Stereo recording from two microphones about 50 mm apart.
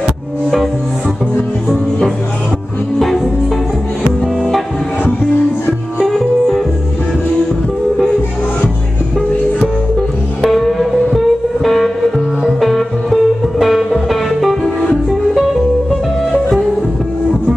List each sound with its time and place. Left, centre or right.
4.4 s music: centre
6.0 s music: centre
10.4 s music: centre